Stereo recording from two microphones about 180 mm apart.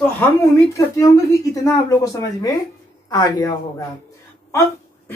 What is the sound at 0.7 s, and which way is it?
Speech, 15° left (ahead or behind).